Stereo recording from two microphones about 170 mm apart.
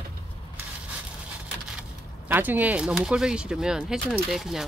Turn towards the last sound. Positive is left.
turn(degrees=0)  # may be behind; listen again after turning